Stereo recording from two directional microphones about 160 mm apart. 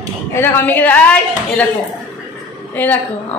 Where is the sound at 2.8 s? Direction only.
10° left (ahead or behind).